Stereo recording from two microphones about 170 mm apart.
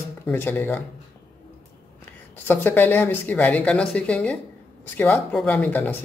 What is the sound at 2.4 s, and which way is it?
Speech, 10° left (ahead or behind).